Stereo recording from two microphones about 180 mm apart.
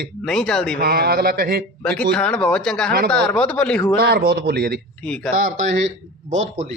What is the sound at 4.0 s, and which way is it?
Speech, 60° right (ahead or behind).